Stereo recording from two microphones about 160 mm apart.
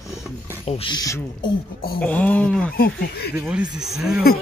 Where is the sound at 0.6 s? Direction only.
35° left (ahead or behind).